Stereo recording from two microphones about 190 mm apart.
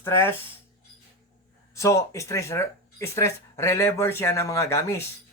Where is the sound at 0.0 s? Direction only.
15° left (ahead or behind).